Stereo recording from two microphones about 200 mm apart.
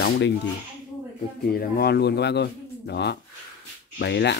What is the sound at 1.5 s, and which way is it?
Speech, 50° left (ahead or behind).